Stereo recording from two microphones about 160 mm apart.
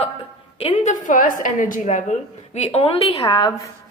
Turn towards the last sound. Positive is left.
turn(degrees=20)  # may be behind; listen again after turning